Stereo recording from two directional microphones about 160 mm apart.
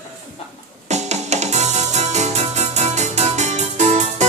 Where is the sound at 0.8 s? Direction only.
45° right (ahead or behind).